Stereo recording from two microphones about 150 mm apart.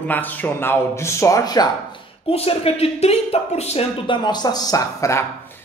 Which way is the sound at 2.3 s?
40° left (ahead or behind).